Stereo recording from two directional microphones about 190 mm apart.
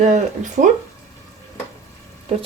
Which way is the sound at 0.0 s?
40° right (ahead or behind).